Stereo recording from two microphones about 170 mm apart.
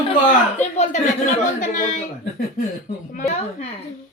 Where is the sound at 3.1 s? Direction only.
40° left (ahead or behind).